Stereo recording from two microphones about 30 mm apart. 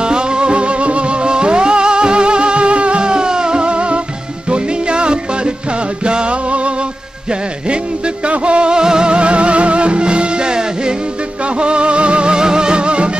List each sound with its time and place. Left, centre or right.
0.0 s music: right
3.1 s music: right
8.3 s music: right
9.1 s music: right